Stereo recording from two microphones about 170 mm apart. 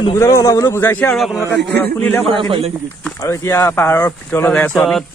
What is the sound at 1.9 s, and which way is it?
Speech, 10° left (ahead or behind).